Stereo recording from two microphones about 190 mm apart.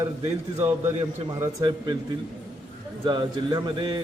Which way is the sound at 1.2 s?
20° right (ahead or behind).